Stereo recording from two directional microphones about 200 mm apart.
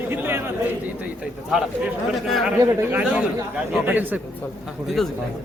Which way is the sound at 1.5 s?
Centre (ahead or behind).